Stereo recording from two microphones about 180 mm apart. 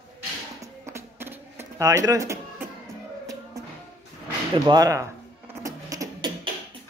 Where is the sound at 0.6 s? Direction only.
15° right (ahead or behind).